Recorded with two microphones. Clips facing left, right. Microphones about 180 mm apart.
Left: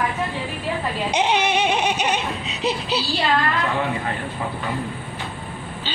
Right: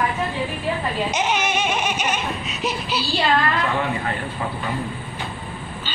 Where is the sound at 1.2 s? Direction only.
30° left (ahead or behind).